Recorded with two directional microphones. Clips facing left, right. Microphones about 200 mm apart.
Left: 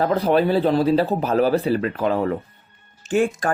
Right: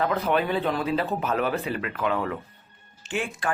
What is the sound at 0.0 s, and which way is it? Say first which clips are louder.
Speech: left 6 dB; 35° left (ahead or behind).